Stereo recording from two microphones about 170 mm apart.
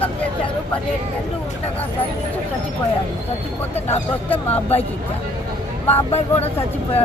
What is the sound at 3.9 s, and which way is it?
Speech, 10° left (ahead or behind).